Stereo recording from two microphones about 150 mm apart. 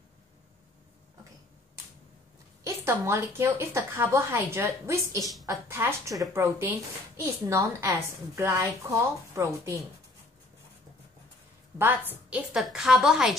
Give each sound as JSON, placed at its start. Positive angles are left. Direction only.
{"t": 2.6, "sound": "a woman's voice", "side_deg": -20}
{"t": 5.2, "sound": "a woman's voice", "side_deg": 0}
{"t": 5.5, "sound": "a woman's voice", "side_deg": -15}
{"t": 11.8, "sound": "a woman's voice", "side_deg": -15}